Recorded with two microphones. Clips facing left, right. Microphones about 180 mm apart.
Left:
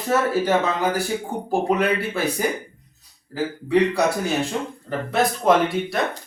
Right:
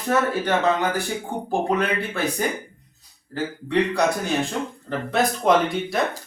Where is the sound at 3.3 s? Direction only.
5° left (ahead or behind).